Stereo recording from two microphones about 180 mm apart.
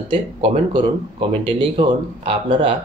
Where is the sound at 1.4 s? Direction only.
30° right (ahead or behind).